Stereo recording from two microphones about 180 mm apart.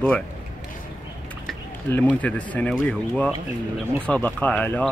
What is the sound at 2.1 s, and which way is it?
Speech, 10° left (ahead or behind).